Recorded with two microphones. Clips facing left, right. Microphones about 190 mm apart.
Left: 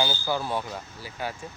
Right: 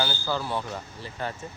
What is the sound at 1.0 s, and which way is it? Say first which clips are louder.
Speech: even; 5° left (ahead or behind).